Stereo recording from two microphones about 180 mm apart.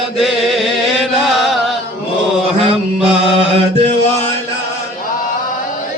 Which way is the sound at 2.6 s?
30° right (ahead or behind).